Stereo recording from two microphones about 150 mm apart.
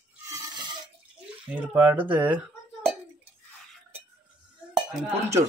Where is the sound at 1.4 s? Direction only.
10° right (ahead or behind).